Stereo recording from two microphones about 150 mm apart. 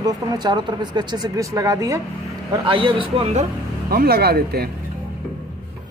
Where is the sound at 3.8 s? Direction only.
90° right.